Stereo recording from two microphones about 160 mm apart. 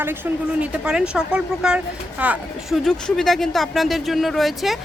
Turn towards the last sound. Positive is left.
turn(degrees=0)  # may be behind; listen again after turning